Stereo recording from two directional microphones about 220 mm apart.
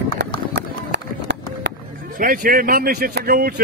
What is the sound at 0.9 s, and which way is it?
Run, 55° right (ahead or behind).